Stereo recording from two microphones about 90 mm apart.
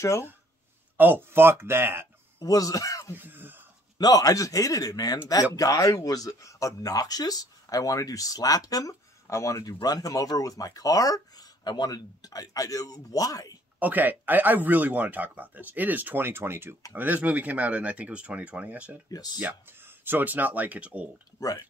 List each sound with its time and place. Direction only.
0.9 s speech: 20° right (ahead or behind)
2.4 s speech: 40° left (ahead or behind)
3.2 s whispering: 20° right (ahead or behind)
4.0 s speech: 40° left (ahead or behind)
13.7 s speech: 20° right (ahead or behind)
19.0 s speech: 45° left (ahead or behind)
19.4 s speech: 20° right (ahead or behind)
21.4 s speech: 40° left (ahead or behind)